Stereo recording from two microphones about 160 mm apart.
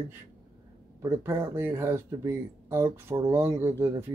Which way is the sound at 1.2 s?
15° right (ahead or behind).